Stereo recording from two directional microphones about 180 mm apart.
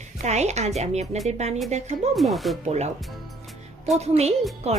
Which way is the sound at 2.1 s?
Centre (ahead or behind).